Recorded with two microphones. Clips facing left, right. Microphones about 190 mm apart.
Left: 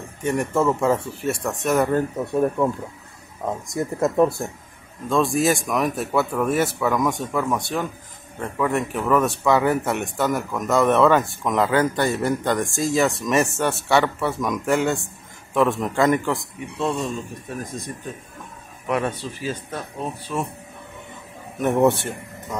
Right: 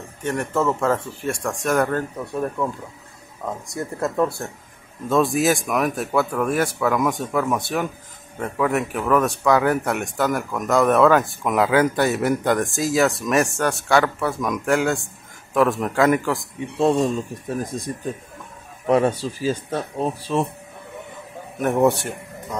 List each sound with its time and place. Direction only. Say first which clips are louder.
0.2 s speech: left 1 dB; 10° left (ahead or behind)
2.0 s speech: left 4 dB; 15° left (ahead or behind)
5.1 s speech: right 1 dB; centre (ahead or behind)
16.7 s speech: right 6 dB; 35° right (ahead or behind)
18.9 s speech: right 6 dB; 35° right (ahead or behind)
21.5 s speech: even; centre (ahead or behind)